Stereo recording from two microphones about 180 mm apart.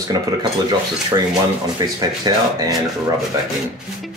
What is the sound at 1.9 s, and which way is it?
Speech, 20° right (ahead or behind).